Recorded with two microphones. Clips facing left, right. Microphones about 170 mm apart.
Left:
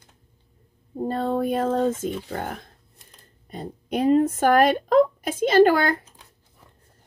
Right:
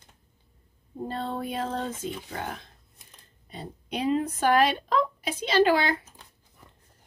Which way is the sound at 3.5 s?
50° left (ahead or behind).